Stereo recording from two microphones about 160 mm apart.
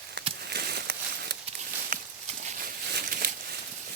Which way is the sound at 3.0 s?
75° right (ahead or behind).